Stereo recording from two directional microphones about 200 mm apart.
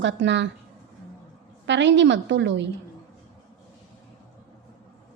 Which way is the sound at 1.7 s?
65° right (ahead or behind).